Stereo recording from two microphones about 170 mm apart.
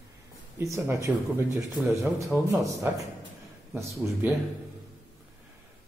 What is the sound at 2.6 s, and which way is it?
Speech, 20° right (ahead or behind).